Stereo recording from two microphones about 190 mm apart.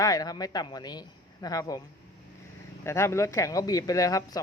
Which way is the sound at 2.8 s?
15° left (ahead or behind).